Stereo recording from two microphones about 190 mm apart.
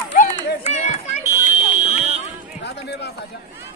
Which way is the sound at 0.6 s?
35° left (ahead or behind).